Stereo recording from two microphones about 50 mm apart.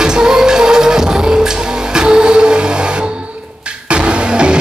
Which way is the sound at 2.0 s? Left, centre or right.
Centre.